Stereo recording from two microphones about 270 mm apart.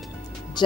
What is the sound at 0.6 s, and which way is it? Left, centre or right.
Speech, centre.